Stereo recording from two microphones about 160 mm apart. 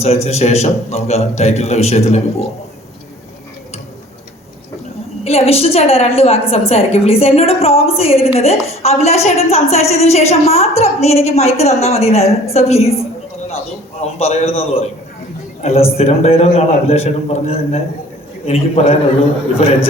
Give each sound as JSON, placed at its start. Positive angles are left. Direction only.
{"t": 0.3, "sound": "a woman's voice", "side_deg": 45}
{"t": 5.2, "sound": "a woman's voice", "side_deg": 40}
{"t": 14.0, "sound": "a woman's voice", "side_deg": 40}